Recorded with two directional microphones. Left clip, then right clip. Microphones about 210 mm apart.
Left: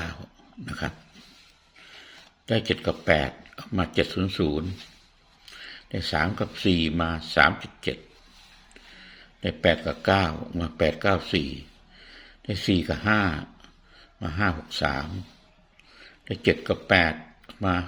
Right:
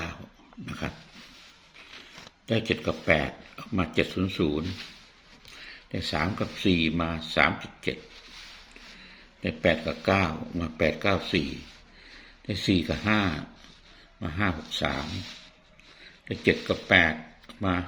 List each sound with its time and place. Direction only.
0.6 s pig: 20° left (ahead or behind)
2.5 s speech: 20° left (ahead or behind)
5.6 s speech: 20° left (ahead or behind)
9.4 s speech: 20° left (ahead or behind)
12.5 s speech: 20° left (ahead or behind)